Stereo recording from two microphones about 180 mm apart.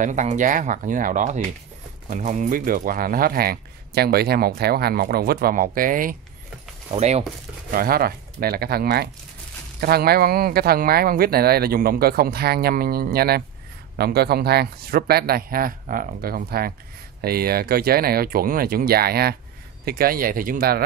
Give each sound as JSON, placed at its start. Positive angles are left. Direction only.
{"t": 0.0, "sound": "speech", "side_deg": -40}
{"t": 6.9, "sound": "speech", "side_deg": -35}
{"t": 7.7, "sound": "speech", "side_deg": -55}